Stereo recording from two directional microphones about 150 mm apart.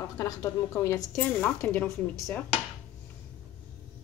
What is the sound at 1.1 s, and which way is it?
Speech, 10° left (ahead or behind).